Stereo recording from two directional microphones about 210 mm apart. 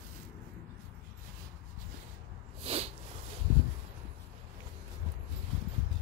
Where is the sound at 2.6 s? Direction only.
30° right (ahead or behind).